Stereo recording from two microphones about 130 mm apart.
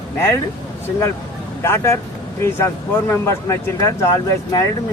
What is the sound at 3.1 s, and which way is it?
Speech, 25° left (ahead or behind).